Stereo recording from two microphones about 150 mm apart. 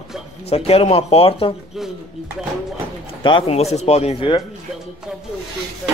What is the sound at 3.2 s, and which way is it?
A man's voice, 35° left (ahead or behind).